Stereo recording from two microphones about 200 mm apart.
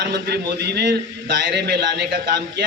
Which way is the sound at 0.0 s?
55° right (ahead or behind).